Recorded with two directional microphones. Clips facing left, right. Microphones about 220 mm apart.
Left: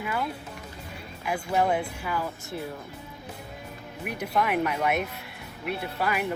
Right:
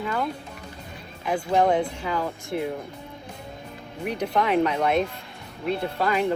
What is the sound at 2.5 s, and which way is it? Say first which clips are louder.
Speech: right 8 dB; 20° right (ahead or behind).